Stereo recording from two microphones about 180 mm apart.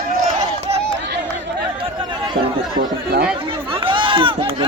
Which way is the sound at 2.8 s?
55° right (ahead or behind).